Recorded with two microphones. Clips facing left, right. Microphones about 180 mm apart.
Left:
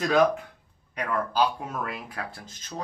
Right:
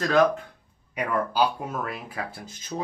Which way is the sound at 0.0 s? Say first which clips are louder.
Right 1 dB; 10° left (ahead or behind).